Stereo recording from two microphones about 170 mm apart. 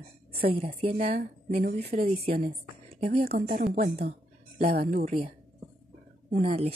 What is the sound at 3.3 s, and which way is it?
Speech, 55° right (ahead or behind).